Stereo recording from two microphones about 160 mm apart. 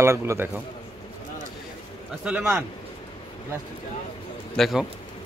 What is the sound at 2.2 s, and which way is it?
Speech, 5° right (ahead or behind).